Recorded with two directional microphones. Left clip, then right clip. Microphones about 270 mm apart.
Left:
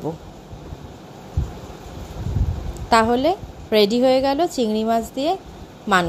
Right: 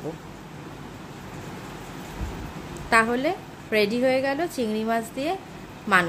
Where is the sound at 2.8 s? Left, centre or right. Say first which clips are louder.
Left 5 dB; left.